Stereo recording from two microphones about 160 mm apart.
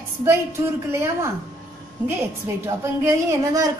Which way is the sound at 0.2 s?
15° right (ahead or behind).